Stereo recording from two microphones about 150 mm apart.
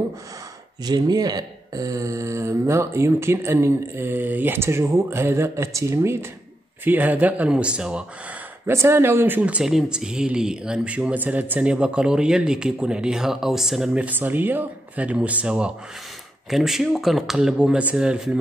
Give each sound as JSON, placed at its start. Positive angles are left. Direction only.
{"t": 0.8, "sound": "speech", "side_deg": -25}